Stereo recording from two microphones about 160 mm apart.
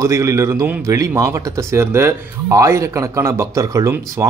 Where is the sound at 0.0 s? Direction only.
20° right (ahead or behind).